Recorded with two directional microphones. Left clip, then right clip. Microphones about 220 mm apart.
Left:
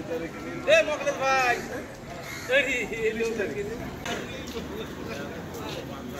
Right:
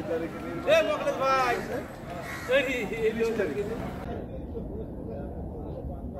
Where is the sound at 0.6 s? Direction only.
50° right (ahead or behind).